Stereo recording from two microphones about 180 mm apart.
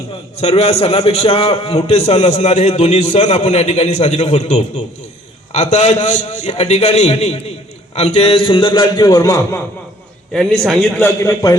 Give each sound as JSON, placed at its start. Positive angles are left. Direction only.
{"t": 0.1, "sound": "a man's voice", "side_deg": 35}
{"t": 10.3, "sound": "a man's voice", "side_deg": 5}